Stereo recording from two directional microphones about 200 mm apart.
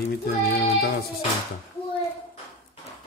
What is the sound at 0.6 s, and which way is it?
Child singing, 55° left (ahead or behind).